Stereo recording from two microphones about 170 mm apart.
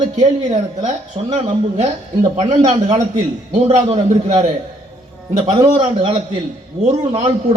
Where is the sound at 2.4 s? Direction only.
40° right (ahead or behind).